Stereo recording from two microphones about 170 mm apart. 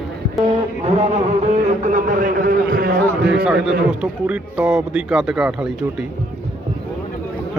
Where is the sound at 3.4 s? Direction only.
5° right (ahead or behind).